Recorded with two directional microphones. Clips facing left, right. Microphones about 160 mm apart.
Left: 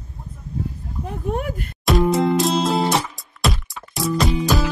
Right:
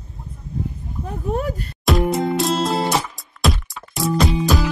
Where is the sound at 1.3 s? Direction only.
35° right (ahead or behind).